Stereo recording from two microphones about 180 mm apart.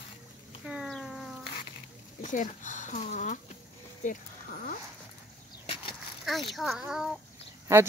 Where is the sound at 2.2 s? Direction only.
45° left (ahead or behind).